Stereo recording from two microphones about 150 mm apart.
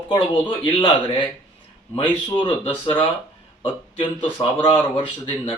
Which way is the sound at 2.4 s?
35° left (ahead or behind).